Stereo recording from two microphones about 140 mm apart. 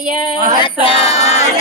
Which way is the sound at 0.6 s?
45° left (ahead or behind).